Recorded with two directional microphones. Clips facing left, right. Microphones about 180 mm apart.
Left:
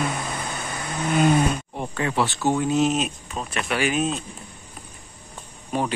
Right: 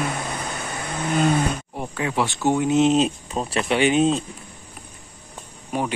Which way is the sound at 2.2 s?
15° right (ahead or behind).